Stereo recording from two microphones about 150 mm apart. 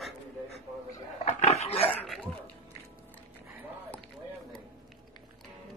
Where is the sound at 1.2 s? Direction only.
45° left (ahead or behind).